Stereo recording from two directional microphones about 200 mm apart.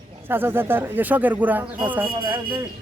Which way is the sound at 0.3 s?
10° right (ahead or behind).